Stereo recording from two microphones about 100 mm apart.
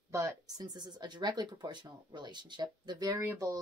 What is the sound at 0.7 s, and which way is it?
A woman's voice, 45° right (ahead or behind).